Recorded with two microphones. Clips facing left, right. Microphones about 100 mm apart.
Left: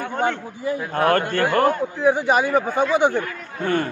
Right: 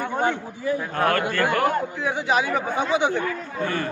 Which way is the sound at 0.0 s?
15° right (ahead or behind).